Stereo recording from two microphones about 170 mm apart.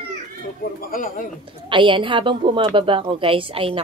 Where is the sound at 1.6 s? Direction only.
30° right (ahead or behind).